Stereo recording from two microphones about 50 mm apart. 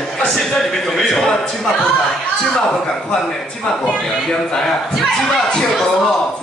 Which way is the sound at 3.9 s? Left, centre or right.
Centre.